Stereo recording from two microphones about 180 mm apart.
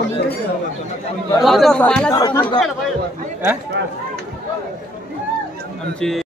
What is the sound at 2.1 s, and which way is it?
Speech, 25° left (ahead or behind).